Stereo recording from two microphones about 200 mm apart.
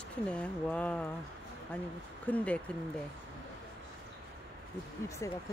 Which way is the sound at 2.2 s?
5° left (ahead or behind).